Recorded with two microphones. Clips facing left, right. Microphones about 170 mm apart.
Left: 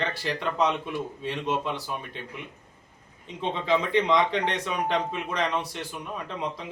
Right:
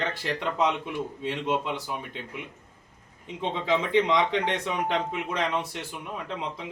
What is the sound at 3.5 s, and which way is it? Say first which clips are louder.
Speech: even; 15° right (ahead or behind).